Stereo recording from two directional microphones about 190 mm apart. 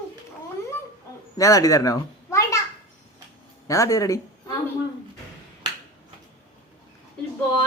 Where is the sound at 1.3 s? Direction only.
15° left (ahead or behind).